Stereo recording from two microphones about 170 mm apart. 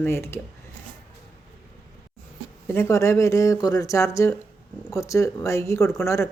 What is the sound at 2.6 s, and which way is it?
Speech, 15° left (ahead or behind).